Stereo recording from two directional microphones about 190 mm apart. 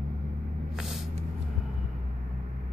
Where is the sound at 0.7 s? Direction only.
Centre (ahead or behind).